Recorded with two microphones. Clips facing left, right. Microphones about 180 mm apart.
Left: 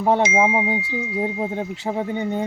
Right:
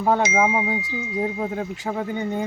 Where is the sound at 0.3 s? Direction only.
15° left (ahead or behind).